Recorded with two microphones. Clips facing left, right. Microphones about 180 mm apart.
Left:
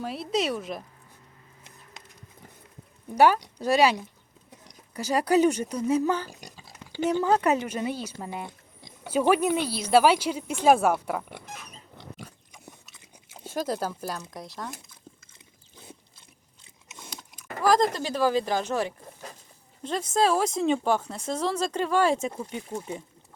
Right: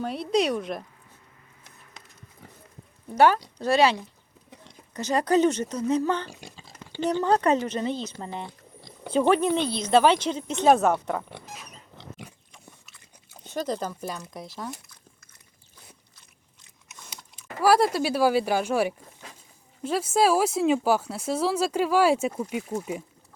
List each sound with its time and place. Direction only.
0.0 s speech: 5° left (ahead or behind)
3.2 s a woman's voice: 15° left (ahead or behind)
13.4 s speech: 10° left (ahead or behind)
15.7 s a sound: 25° left (ahead or behind)
17.6 s speech: 10° right (ahead or behind)